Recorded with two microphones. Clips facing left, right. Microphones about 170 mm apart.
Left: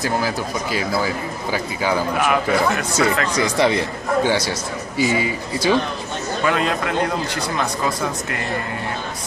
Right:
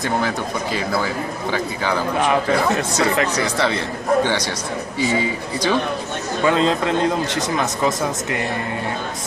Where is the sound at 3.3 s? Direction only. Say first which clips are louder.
Left 3 dB; 15° left (ahead or behind).